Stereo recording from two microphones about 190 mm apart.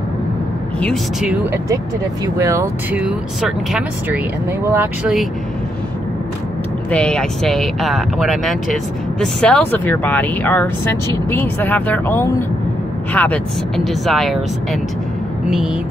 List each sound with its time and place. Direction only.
1.2 s speech: 10° right (ahead or behind)
6.9 s speech: 5° left (ahead or behind)
15.4 s vehicle: 5° right (ahead or behind)